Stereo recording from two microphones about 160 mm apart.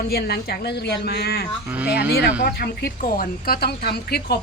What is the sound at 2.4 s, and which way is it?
Speech, 75° left (ahead or behind).